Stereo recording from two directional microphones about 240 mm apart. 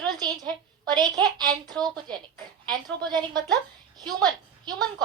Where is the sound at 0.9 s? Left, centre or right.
Centre.